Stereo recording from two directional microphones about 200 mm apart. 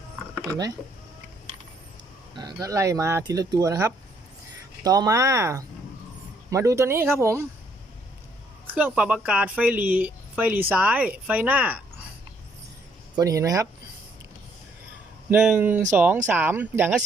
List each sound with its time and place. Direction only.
2.3 s speech: 20° right (ahead or behind)
8.7 s speech: 5° right (ahead or behind)
13.1 s speech: 15° right (ahead or behind)
15.3 s speech: 5° right (ahead or behind)